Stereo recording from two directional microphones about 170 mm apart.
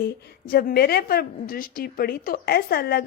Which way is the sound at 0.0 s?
65° left (ahead or behind).